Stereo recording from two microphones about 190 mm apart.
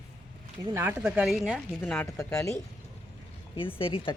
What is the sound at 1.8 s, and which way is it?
Speech, 10° left (ahead or behind).